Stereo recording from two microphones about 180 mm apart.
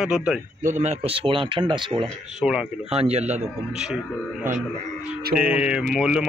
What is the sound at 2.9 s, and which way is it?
Speech, 35° right (ahead or behind).